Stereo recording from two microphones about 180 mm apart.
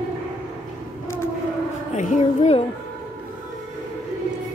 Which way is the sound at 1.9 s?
45° left (ahead or behind).